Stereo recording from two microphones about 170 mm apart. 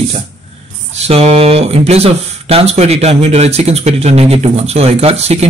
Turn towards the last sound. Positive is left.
turn(degrees=-40)  # may be behind; listen again after turning